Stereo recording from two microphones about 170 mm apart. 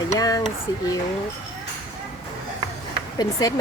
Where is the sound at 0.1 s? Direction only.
20° left (ahead or behind).